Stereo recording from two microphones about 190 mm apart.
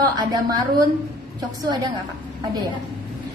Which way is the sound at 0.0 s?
20° right (ahead or behind).